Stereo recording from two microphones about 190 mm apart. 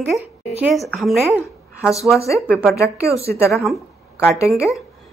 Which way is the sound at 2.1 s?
15° left (ahead or behind).